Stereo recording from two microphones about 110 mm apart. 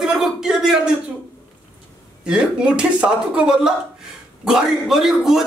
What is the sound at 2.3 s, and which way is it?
A man's voice, 10° right (ahead or behind).